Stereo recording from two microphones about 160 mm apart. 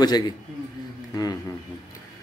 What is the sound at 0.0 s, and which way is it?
Speech, 25° left (ahead or behind).